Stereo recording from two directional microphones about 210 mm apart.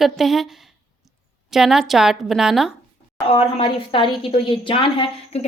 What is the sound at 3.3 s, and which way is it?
A woman's voice, 25° left (ahead or behind).